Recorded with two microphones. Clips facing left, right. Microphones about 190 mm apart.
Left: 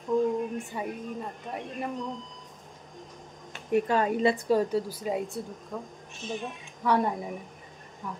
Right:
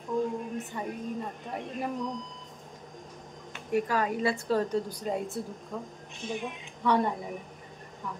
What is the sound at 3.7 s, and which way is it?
A woman's voice, 25° left (ahead or behind).